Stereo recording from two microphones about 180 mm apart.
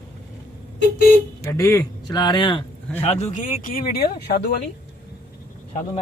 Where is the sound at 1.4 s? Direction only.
15° left (ahead or behind).